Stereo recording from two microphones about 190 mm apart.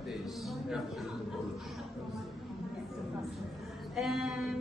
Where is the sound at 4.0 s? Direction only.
5° right (ahead or behind).